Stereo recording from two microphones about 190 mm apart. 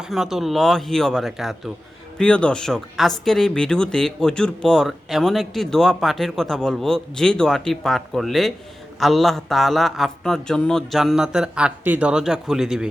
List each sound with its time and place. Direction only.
0.0 s speech: centre (ahead or behind)